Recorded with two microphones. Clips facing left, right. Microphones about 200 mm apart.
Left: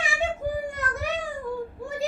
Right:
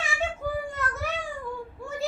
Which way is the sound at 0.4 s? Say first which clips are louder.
Even; 15° left (ahead or behind).